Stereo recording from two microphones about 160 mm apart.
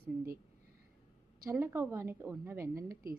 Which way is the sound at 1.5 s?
15° right (ahead or behind).